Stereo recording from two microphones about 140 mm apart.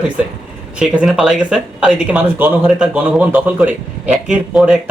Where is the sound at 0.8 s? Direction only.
5° right (ahead or behind).